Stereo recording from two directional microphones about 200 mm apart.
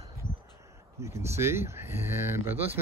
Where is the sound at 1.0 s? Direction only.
15° right (ahead or behind).